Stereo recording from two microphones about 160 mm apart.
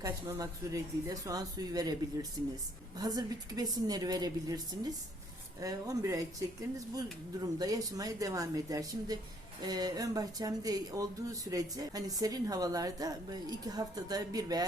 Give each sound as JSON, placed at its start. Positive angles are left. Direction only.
{"t": 0.0, "sound": "speech", "side_deg": -20}
{"t": 3.0, "sound": "speech", "side_deg": -25}